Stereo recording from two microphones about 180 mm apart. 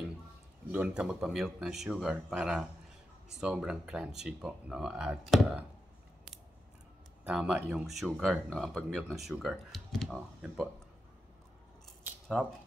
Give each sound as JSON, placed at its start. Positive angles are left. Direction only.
{"t": 0.7, "sound": "speech", "side_deg": -5}
{"t": 7.2, "sound": "speech", "side_deg": -5}